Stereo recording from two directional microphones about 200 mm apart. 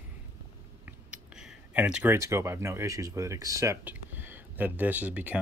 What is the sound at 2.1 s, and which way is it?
Speech, 15° right (ahead or behind).